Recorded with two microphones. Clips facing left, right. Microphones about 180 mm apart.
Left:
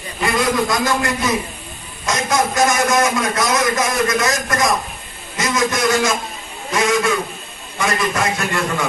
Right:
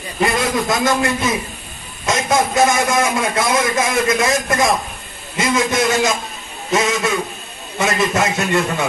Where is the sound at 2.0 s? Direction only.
25° right (ahead or behind).